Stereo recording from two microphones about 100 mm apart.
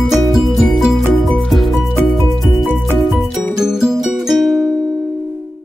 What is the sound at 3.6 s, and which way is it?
Music, 5° right (ahead or behind).